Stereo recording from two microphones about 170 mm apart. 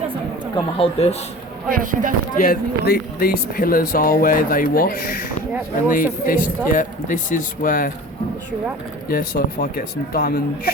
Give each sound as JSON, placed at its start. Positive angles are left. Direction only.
{"t": 0.5, "sound": "speech", "side_deg": 35}
{"t": 1.7, "sound": "speech", "side_deg": -50}
{"t": 2.4, "sound": "a man's voice", "side_deg": 60}
{"t": 9.0, "sound": "speech", "side_deg": 60}